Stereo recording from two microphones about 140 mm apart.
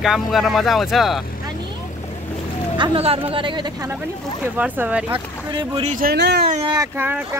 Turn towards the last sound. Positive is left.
turn(degrees=-15)  # may be behind; listen again after turning